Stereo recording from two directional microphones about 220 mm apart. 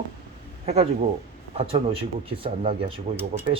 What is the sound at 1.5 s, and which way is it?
Speech, 25° right (ahead or behind).